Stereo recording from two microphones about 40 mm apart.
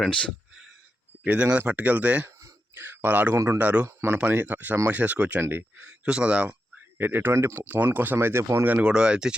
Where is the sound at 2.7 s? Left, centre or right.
Right.